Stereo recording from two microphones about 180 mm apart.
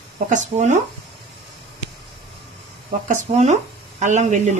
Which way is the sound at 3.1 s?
40° right (ahead or behind).